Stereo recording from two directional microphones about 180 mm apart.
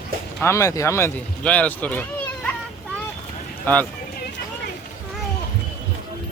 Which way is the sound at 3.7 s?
10° left (ahead or behind).